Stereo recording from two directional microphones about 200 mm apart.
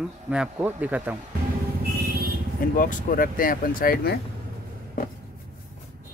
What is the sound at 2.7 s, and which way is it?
Speech, 45° left (ahead or behind).